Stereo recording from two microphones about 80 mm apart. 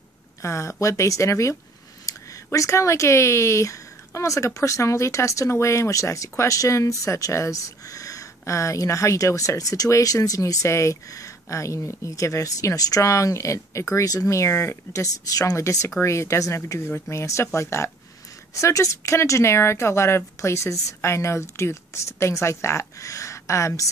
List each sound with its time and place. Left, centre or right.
0.4 s speech: left